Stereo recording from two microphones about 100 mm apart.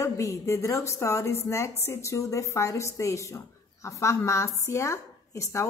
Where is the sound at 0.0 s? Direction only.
30° left (ahead or behind).